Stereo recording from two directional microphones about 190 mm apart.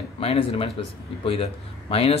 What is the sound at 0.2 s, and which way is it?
Speech, 30° left (ahead or behind).